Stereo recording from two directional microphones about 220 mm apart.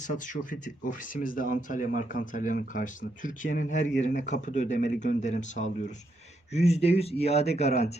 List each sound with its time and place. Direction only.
0.0 s speech: 35° left (ahead or behind)